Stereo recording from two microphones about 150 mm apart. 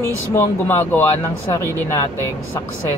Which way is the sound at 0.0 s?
15° left (ahead or behind).